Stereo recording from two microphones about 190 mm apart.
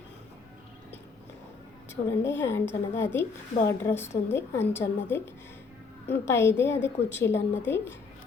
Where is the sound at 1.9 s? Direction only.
15° left (ahead or behind).